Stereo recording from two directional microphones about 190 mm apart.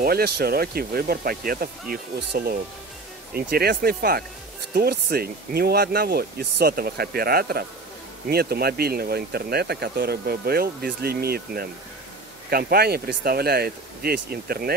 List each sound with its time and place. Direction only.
0.0 s speech: 55° right (ahead or behind)